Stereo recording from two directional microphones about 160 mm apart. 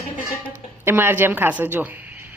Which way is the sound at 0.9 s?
15° right (ahead or behind).